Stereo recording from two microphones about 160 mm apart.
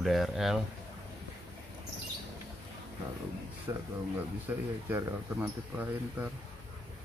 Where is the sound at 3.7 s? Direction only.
15° right (ahead or behind).